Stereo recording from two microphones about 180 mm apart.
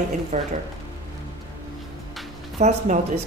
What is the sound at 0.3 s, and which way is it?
Speech, 45° right (ahead or behind).